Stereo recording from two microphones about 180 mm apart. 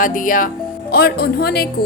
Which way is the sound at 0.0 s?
50° left (ahead or behind).